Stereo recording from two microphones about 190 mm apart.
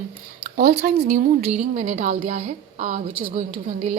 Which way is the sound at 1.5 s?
40° right (ahead or behind).